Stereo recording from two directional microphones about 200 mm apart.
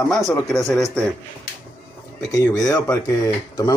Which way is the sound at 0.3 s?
Centre (ahead or behind).